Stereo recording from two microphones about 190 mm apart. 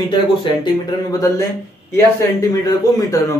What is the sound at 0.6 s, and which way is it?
Speech, 20° left (ahead or behind).